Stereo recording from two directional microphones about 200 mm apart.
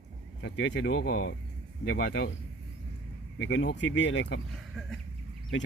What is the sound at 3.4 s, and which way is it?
Speech, 60° left (ahead or behind).